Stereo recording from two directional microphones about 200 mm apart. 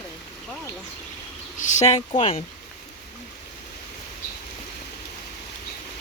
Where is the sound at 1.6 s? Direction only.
35° left (ahead or behind).